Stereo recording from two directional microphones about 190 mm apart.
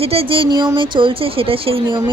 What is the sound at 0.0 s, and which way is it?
Speech, 30° right (ahead or behind).